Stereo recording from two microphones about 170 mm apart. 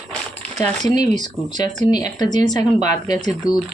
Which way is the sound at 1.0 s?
25° left (ahead or behind).